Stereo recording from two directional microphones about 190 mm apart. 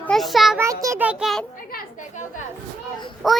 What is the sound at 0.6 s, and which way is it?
Speech, 15° right (ahead or behind).